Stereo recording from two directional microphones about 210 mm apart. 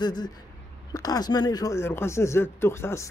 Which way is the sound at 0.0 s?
20° left (ahead or behind).